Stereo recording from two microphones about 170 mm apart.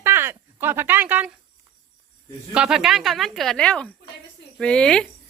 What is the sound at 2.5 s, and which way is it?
A woman's voice, 5° right (ahead or behind).